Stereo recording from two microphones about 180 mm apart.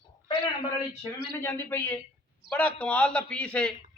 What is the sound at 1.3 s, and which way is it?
A man's voice, 15° left (ahead or behind).